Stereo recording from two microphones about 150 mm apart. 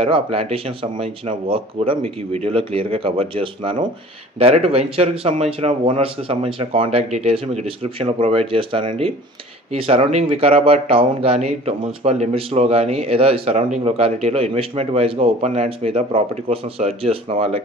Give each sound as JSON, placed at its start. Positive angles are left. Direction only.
{"t": 0.0, "sound": "speech", "side_deg": -40}